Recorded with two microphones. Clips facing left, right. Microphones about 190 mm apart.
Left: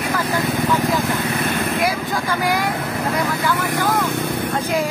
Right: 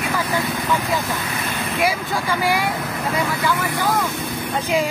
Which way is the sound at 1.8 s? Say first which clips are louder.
Even; 10° right (ahead or behind).